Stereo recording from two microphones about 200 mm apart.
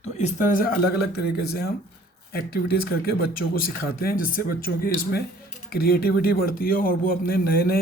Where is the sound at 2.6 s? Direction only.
50° left (ahead or behind).